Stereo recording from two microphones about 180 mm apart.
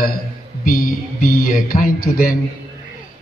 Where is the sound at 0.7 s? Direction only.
50° left (ahead or behind).